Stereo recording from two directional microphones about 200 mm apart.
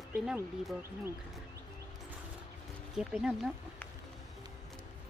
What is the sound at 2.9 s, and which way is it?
Speech, centre (ahead or behind).